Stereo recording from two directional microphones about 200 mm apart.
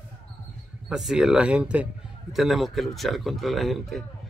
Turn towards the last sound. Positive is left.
turn(degrees=0)  # may be behind; listen again after turning